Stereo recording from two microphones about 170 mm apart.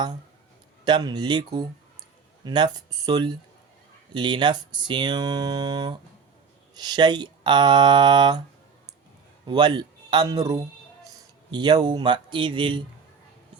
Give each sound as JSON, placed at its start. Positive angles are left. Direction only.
{"t": 0.9, "sound": "speech", "side_deg": -25}
{"t": 9.5, "sound": "speech", "side_deg": -25}